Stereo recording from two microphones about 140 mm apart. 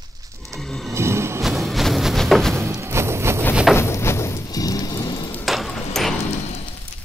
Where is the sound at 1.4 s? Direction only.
Centre (ahead or behind).